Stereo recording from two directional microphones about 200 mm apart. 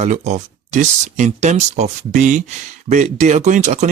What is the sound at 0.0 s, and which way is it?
Speech, 35° right (ahead or behind).